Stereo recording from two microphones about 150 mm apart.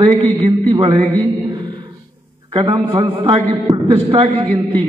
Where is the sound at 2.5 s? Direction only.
35° right (ahead or behind).